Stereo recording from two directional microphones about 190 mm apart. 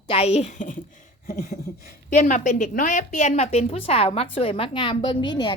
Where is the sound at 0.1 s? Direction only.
35° left (ahead or behind).